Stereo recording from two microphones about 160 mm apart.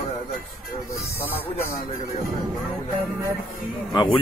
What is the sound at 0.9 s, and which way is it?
Speech, 15° left (ahead or behind).